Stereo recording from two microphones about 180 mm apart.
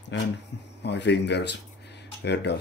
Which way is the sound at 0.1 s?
85° left.